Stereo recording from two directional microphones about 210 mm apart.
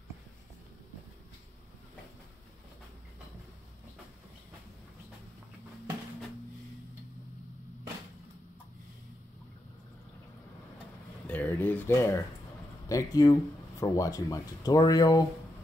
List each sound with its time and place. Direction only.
11.2 s speech: 10° left (ahead or behind)